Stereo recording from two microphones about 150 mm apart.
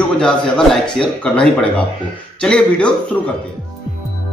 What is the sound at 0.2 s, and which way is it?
A man's voice, 5° left (ahead or behind).